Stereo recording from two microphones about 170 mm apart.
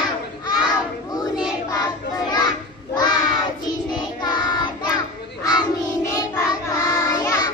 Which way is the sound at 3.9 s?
25° left (ahead or behind).